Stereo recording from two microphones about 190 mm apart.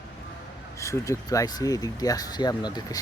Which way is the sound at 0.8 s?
15° left (ahead or behind).